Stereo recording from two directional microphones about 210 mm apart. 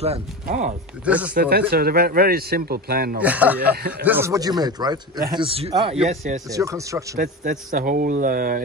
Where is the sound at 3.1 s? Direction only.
5° right (ahead or behind); by 6.4 s 35° right (ahead or behind).